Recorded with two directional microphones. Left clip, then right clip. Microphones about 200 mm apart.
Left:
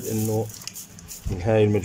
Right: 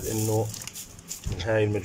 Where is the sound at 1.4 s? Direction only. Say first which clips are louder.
Left 5 dB; 15° left (ahead or behind).